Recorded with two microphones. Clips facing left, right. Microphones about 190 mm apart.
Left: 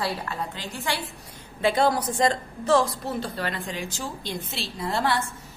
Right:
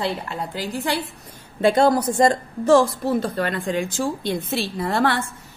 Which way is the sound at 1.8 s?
45° right (ahead or behind).